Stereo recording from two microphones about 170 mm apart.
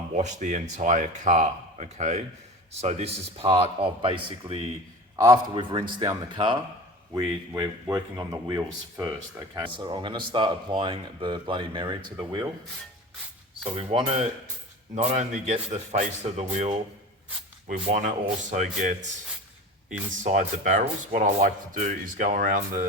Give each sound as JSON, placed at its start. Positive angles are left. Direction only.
{"t": 0.1, "sound": "a man's voice", "side_deg": -45}
{"t": 5.1, "sound": "speech", "side_deg": -20}
{"t": 13.7, "sound": "a man's voice", "side_deg": -35}
{"t": 20.2, "sound": "speech", "side_deg": -45}